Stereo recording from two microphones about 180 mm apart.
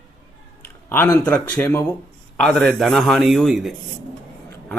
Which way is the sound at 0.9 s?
10° left (ahead or behind).